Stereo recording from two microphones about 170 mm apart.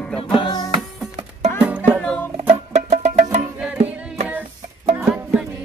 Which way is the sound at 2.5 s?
40° right (ahead or behind).